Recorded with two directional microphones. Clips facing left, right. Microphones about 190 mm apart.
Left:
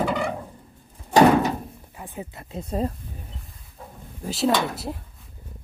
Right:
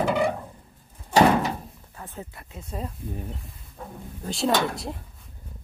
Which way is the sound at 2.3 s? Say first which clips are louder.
Left 8 dB; 35° left (ahead or behind).